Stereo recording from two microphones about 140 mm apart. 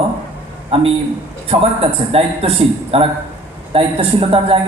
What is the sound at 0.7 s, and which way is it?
A woman's voice, 45° right (ahead or behind).